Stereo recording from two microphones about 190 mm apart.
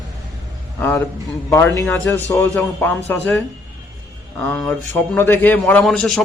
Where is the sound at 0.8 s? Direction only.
15° left (ahead or behind).